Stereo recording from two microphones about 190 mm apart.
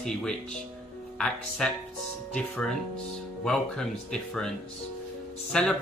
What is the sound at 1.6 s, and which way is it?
Speech, 5° left (ahead or behind).